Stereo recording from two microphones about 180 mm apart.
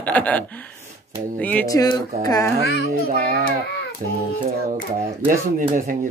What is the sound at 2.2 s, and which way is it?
Speech, 20° left (ahead or behind).